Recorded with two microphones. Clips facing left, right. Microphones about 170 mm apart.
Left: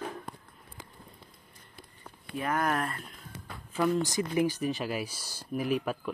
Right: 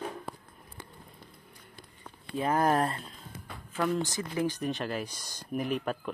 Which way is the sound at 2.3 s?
30° right (ahead or behind).